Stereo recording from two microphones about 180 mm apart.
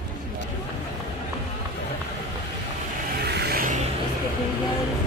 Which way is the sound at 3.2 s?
65° right (ahead or behind).